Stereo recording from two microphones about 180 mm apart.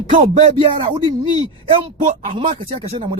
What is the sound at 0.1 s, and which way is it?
Speech, 40° right (ahead or behind).